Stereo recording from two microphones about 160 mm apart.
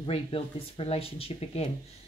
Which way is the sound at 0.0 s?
35° left (ahead or behind).